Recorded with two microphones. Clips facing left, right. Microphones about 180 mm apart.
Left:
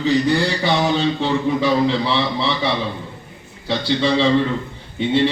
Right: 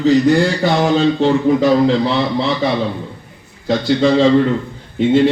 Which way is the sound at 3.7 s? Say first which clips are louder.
Right 5 dB; 45° right (ahead or behind).